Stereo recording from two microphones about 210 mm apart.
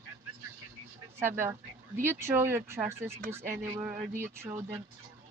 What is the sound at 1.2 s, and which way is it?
Speech, 10° right (ahead or behind).